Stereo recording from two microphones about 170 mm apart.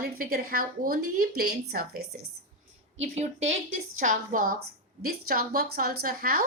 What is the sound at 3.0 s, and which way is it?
A woman's voice, 40° right (ahead or behind).